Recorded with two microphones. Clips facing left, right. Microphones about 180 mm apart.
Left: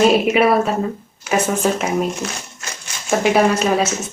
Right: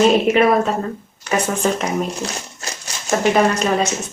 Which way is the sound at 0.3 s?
5° left (ahead or behind).